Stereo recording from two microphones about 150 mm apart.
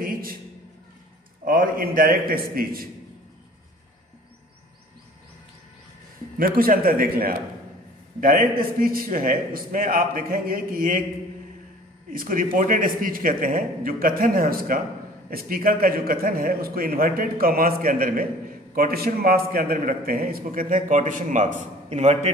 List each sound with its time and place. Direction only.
0.0 s a sound: 75° right (ahead or behind)
1.4 s a man's voice: 70° right (ahead or behind)
6.3 s a man's voice: 75° right (ahead or behind)
12.1 s a man's voice: 70° right (ahead or behind); by 22.3 s 45° right (ahead or behind)